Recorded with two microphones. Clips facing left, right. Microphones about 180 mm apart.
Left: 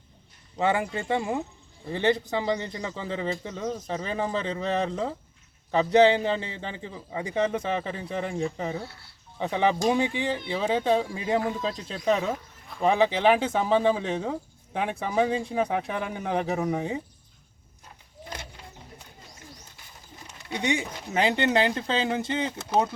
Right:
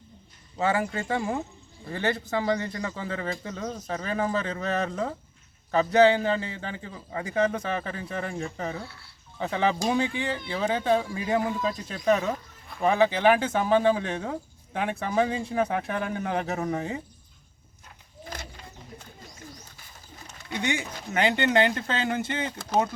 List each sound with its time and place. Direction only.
0.5 s speech: 15° left (ahead or behind)
3.5 s speech: 10° left (ahead or behind)
3.8 s speech: 20° left (ahead or behind)
7.4 s speech: centre (ahead or behind)
7.7 s speech: 20° left (ahead or behind)
12.2 s a sound: centre (ahead or behind)
12.8 s speech: 20° left (ahead or behind)
13.3 s speech: centre (ahead or behind)
14.0 s speech: 20° left (ahead or behind)
14.9 s speech: centre (ahead or behind)
15.8 s speech: 20° left (ahead or behind)
20.5 s speech: 30° left (ahead or behind)
22.2 s speech: centre (ahead or behind)